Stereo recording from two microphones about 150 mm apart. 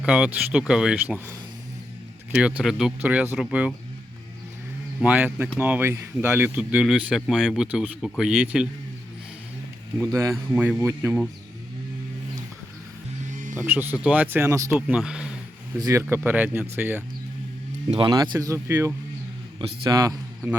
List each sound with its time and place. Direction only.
0.0 s speech: 10° right (ahead or behind)
5.0 s speech: 10° right (ahead or behind)
10.0 s speech: 20° right (ahead or behind)
13.3 s music: 60° right (ahead or behind)
13.6 s speech: 10° right (ahead or behind)
15.8 s speech: 20° right (ahead or behind)
18.1 s speech: 25° right (ahead or behind)
19.5 s a man's voice: 30° right (ahead or behind)